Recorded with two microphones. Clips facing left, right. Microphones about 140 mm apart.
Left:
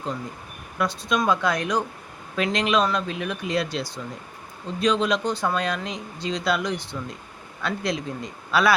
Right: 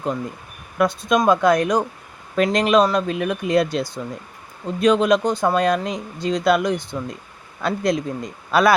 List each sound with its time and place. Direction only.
0.8 s speech: 50° right (ahead or behind)